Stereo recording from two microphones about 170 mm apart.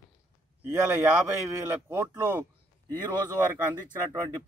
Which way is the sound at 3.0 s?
25° right (ahead or behind).